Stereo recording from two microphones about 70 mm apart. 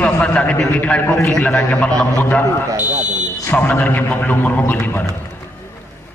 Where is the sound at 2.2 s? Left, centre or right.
Left.